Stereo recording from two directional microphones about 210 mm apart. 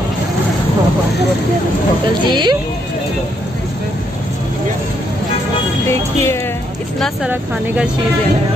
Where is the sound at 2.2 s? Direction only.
20° right (ahead or behind).